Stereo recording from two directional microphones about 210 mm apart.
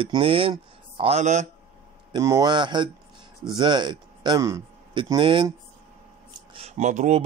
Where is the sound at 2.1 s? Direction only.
15° right (ahead or behind); by 7.2 s 35° right (ahead or behind).